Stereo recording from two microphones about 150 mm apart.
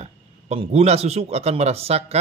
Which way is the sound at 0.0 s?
45° right (ahead or behind).